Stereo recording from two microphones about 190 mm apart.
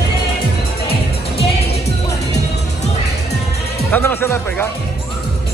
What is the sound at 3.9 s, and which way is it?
Music, 10° left (ahead or behind).